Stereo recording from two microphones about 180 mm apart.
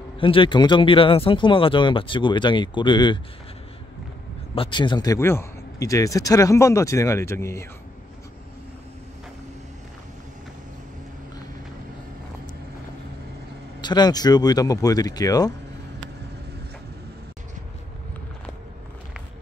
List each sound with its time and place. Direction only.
0.2 s speech: 30° left (ahead or behind)
4.6 s a man's voice: 25° left (ahead or behind)
13.7 s speech: 25° left (ahead or behind)